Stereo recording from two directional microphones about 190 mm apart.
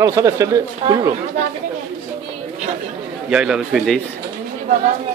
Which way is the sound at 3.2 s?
5° right (ahead or behind).